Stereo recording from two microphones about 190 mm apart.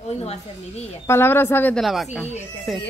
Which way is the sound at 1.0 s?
10° left (ahead or behind).